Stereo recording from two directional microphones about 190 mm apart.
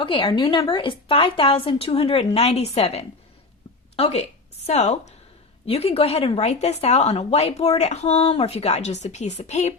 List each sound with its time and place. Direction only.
0.0 s a woman's voice: 25° left (ahead or behind)